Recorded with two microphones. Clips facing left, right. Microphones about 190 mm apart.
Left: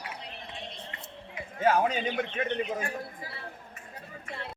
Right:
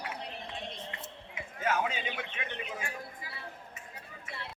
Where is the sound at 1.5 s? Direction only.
35° left (ahead or behind).